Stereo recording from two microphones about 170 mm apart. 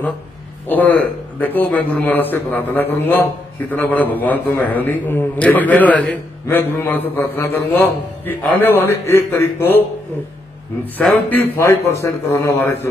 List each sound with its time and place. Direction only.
0.7 s a man's voice: 10° left (ahead or behind)
11.0 s a man's voice: 10° left (ahead or behind)